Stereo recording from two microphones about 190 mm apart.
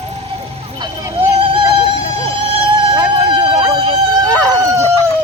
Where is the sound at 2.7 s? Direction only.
25° right (ahead or behind).